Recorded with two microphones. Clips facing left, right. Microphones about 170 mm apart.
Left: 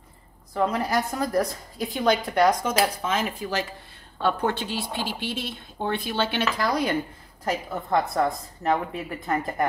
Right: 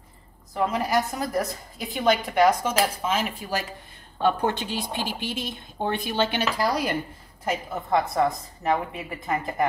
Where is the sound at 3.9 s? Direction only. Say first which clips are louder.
Right 4 dB; 15° right (ahead or behind).